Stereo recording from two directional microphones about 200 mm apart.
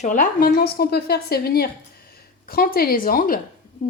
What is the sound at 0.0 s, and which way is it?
A woman's voice, 40° left (ahead or behind).